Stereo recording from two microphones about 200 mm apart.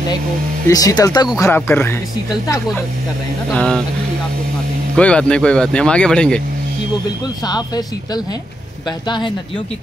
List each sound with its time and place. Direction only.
0.7 s speech: 20° left (ahead or behind)
3.5 s speech: 5° left (ahead or behind)
4.9 s speech: 5° left (ahead or behind)
7.4 s speech: 20° left (ahead or behind)